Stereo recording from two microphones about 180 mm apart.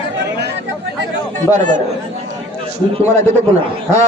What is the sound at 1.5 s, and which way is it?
Speech, 45° right (ahead or behind).